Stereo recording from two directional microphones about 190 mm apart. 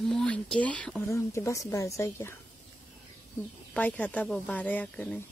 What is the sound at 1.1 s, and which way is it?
Speech, 15° left (ahead or behind).